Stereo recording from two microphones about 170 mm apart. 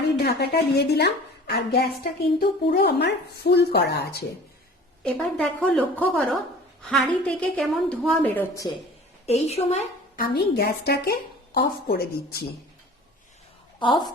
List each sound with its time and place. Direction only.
0.2 s speech: 70° left (ahead or behind)
5.0 s a woman's voice: 5° left (ahead or behind)
9.2 s a woman's voice: 40° left (ahead or behind)
10.2 s speech: 65° left (ahead or behind)
13.7 s a woman's voice: 25° left (ahead or behind)